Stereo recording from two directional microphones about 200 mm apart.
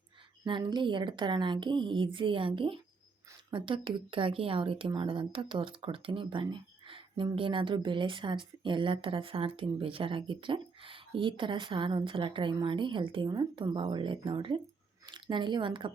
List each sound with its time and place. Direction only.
0.4 s speech: 25° right (ahead or behind)